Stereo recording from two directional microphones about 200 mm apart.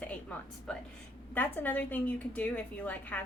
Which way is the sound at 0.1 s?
5° left (ahead or behind).